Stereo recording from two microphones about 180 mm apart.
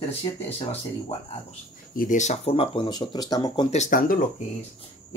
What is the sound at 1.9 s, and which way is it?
Speech, 50° left (ahead or behind).